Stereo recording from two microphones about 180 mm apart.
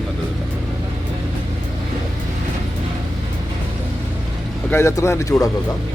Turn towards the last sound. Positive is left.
turn(degrees=15)  # may be behind; listen again after turning